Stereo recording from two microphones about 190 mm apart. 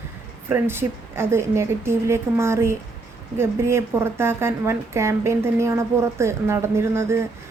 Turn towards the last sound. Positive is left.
turn(degrees=-15)  # may be behind; listen again after turning